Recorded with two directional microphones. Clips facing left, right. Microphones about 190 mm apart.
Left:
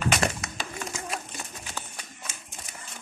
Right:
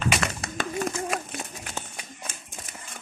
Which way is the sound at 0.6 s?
55° right (ahead or behind).